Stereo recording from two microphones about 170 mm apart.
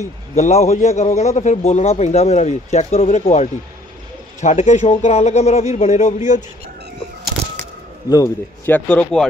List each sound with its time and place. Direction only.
0.4 s a man's voice: 40° left (ahead or behind)
8.1 s speech: 15° left (ahead or behind)